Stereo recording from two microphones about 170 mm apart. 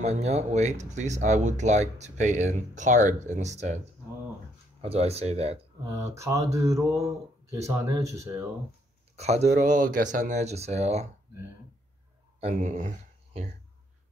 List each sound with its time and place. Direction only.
0.0 s speech: 40° right (ahead or behind)
4.8 s speech: 35° right (ahead or behind)
5.9 s speech: 20° right (ahead or behind)
9.1 s speech: 40° right (ahead or behind)
12.4 s speech: 45° right (ahead or behind)